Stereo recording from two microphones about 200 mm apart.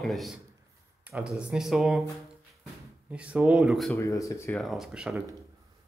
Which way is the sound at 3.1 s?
5° right (ahead or behind).